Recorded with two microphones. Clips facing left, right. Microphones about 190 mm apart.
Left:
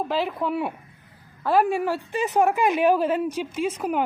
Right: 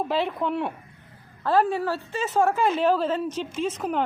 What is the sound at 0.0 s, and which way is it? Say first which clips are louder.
A woman's voice: even; centre (ahead or behind).